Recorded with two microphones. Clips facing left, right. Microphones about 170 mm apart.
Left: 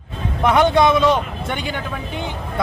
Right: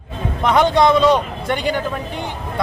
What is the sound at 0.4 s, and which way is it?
Speech, 5° left (ahead or behind).